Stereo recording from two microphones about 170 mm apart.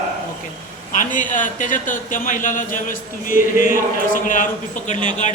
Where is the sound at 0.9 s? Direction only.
50° left (ahead or behind).